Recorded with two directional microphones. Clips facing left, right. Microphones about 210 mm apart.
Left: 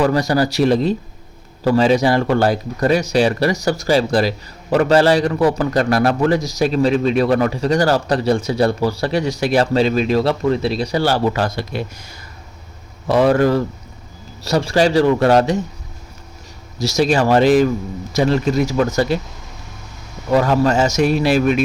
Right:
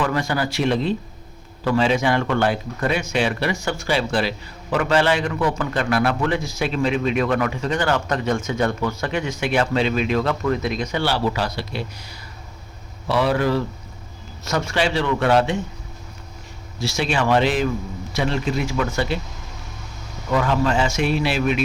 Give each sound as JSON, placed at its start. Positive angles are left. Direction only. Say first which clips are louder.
{"t": 0.0, "sound": "a man's voice", "louder": "left 6 dB", "side_deg": 40}
{"t": 14.4, "sound": "a man's voice", "louder": "left 6 dB", "side_deg": 35}
{"t": 16.7, "sound": "a man's voice", "louder": "left 7 dB", "side_deg": 40}
{"t": 20.3, "sound": "a man's voice", "louder": "left 5 dB", "side_deg": 40}